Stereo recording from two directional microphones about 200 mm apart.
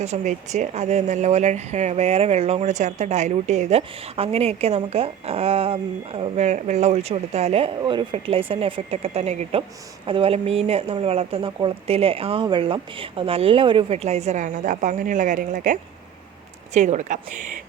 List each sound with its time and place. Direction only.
0.0 s speech: 35° right (ahead or behind)